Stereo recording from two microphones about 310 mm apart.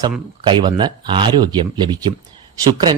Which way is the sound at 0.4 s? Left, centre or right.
Centre.